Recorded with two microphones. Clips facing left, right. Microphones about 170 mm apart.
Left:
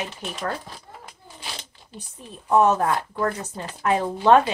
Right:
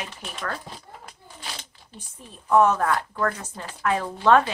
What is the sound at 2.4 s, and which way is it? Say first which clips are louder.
Speech: left 1 dB; 20° left (ahead or behind).